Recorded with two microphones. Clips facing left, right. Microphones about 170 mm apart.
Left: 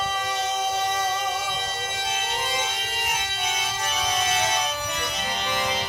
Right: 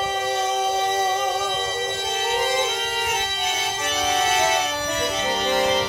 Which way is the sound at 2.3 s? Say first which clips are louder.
Right 7 dB; 55° right (ahead or behind).